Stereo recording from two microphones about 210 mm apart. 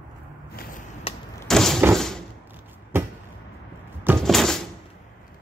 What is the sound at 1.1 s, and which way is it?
Vehicle, 25° left (ahead or behind).